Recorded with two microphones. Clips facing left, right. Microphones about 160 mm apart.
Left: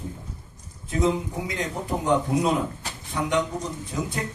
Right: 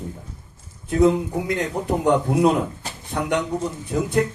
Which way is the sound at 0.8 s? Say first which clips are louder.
Right 6 dB; 60° right (ahead or behind).